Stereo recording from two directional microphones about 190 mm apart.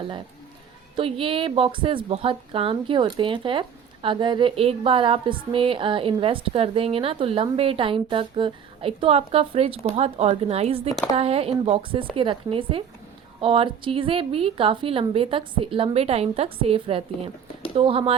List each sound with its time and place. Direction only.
0.9 s a woman's voice: 30° right (ahead or behind)